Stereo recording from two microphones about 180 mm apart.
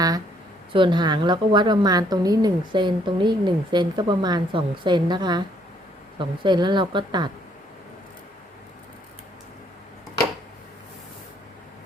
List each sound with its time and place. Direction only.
0.7 s a woman's voice: 25° right (ahead or behind)